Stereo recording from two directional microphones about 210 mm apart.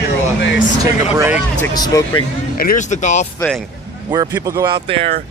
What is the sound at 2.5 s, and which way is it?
Speech, 40° left (ahead or behind).